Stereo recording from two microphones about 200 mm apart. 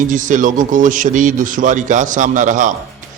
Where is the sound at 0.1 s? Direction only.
40° right (ahead or behind).